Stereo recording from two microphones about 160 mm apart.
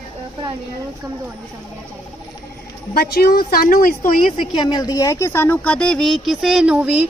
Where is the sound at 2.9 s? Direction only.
70° left (ahead or behind).